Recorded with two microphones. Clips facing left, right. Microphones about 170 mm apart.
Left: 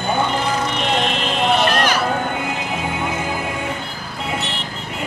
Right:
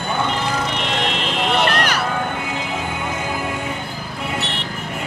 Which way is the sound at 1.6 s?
65° right (ahead or behind).